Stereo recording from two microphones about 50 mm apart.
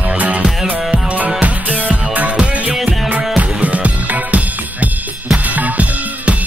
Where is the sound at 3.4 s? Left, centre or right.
Right.